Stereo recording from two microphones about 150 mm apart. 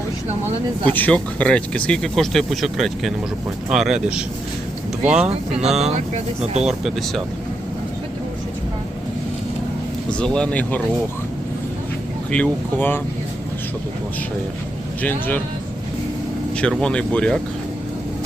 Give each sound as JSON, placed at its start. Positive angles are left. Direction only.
{"t": 0.9, "sound": "speech", "side_deg": 10}
{"t": 5.3, "sound": "speech", "side_deg": -45}
{"t": 6.7, "sound": "speech", "side_deg": 0}
{"t": 10.1, "sound": "speech", "side_deg": 5}
{"t": 12.3, "sound": "speech", "side_deg": 10}
{"t": 16.6, "sound": "speech", "side_deg": 5}